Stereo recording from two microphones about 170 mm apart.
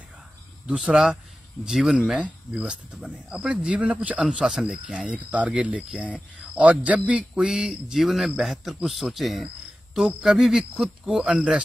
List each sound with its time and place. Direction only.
0.7 s speech: 5° right (ahead or behind)